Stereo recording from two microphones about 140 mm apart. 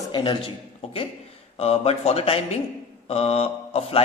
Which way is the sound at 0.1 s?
40° left (ahead or behind).